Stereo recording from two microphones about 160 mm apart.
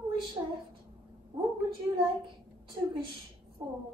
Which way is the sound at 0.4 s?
20° right (ahead or behind).